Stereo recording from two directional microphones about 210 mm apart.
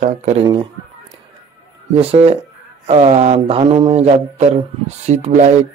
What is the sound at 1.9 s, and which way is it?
Speech, 30° right (ahead or behind).